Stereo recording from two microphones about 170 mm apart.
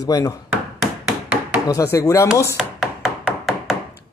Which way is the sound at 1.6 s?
20° left (ahead or behind).